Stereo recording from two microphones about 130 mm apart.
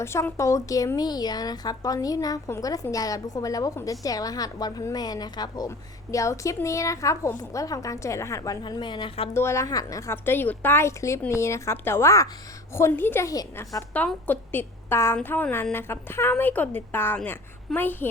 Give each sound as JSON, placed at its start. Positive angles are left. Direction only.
{"t": 0.0, "sound": "a woman's voice", "side_deg": 20}
{"t": 8.6, "sound": "a woman's voice", "side_deg": 35}
{"t": 9.3, "sound": "a woman's voice", "side_deg": 20}
{"t": 13.9, "sound": "a woman's voice", "side_deg": 10}